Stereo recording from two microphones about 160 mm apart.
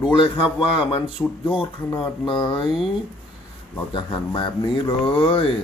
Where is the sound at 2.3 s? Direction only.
30° left (ahead or behind).